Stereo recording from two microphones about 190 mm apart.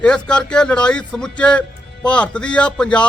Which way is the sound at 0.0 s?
5° left (ahead or behind).